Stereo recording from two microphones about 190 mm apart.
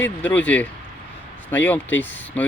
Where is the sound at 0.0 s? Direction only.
10° left (ahead or behind).